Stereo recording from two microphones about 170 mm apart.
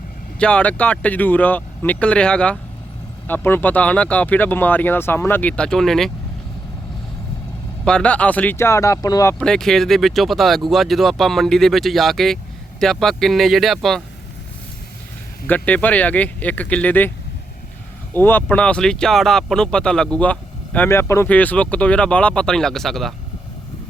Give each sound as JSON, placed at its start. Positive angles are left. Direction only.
{"t": 0.3, "sound": "speech", "side_deg": 5}
{"t": 7.9, "sound": "speech", "side_deg": 5}
{"t": 9.4, "sound": "speech", "side_deg": 5}
{"t": 15.4, "sound": "speech", "side_deg": 10}
{"t": 18.1, "sound": "speech", "side_deg": 10}